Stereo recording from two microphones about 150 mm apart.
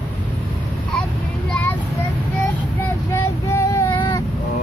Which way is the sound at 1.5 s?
10° left (ahead or behind).